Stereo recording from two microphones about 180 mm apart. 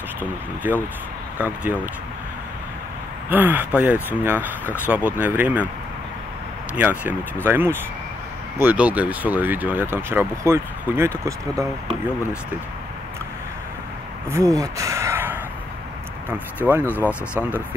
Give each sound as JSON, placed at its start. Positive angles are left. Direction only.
{"t": 0.7, "sound": "speech", "side_deg": -10}
{"t": 3.3, "sound": "speech", "side_deg": -10}
{"t": 6.7, "sound": "speech", "side_deg": -10}
{"t": 14.6, "sound": "a sound", "side_deg": -15}
{"t": 16.3, "sound": "speech", "side_deg": -10}
{"t": 16.8, "sound": "speech", "side_deg": 10}